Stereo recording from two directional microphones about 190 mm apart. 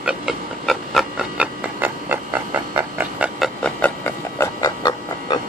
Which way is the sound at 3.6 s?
10° left (ahead or behind).